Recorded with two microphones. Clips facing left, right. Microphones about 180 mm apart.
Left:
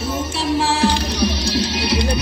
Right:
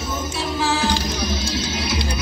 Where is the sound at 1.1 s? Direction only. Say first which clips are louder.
Left 5 dB; 70° left (ahead or behind).